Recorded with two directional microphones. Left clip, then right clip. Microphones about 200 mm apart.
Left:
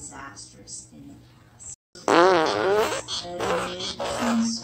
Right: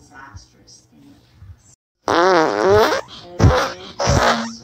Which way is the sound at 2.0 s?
25° right (ahead or behind).